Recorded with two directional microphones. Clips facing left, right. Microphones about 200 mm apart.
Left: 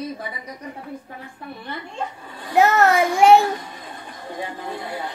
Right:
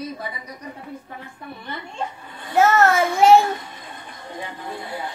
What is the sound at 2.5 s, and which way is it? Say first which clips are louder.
Child singing: even; 15° left (ahead or behind).